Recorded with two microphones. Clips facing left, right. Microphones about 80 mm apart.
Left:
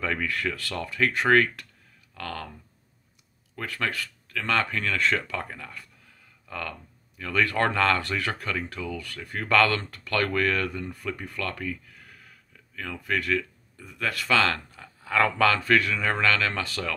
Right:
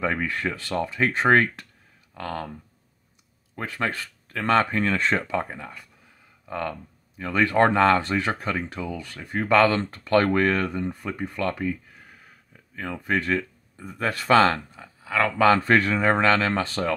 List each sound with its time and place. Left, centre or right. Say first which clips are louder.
0.0 s speech: right 2 dB; right
3.5 s speech: right 2 dB; right
14.8 s speech: left 3 dB; centre
15.4 s speech: right 8 dB; right